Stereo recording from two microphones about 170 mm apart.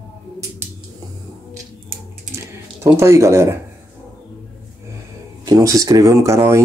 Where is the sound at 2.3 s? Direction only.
15° right (ahead or behind).